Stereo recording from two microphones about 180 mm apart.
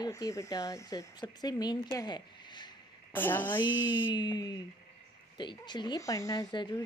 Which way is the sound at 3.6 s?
90° left.